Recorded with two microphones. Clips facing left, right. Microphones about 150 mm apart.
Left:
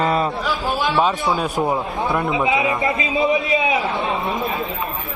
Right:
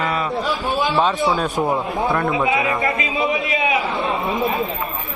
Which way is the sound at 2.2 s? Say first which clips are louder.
Left 3 dB; 20° left (ahead or behind).